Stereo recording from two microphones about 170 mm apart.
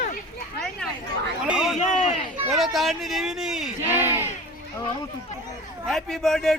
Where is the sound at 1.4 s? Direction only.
5° right (ahead or behind).